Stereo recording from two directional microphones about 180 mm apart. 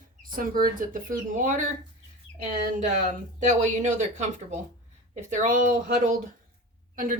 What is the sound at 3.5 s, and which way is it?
Speech, 40° right (ahead or behind).